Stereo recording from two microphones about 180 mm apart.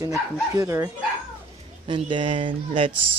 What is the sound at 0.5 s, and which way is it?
Speech, 15° right (ahead or behind).